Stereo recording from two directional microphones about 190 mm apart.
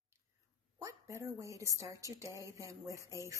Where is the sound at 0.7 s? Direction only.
15° right (ahead or behind).